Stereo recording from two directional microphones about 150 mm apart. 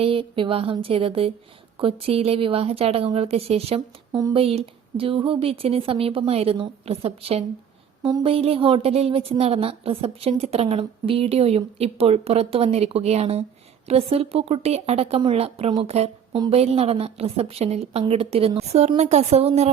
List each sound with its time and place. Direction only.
0.0 s a woman's voice: 40° right (ahead or behind)
3.8 s speech: 25° right (ahead or behind)
4.4 s a woman's voice: 40° right (ahead or behind)
8.0 s speech: 30° right (ahead or behind)
8.3 s a woman's voice: 40° right (ahead or behind)